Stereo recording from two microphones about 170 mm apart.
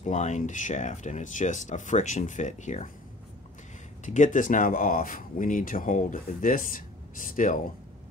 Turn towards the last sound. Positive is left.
turn(degrees=50)  # may be behind; listen again after turning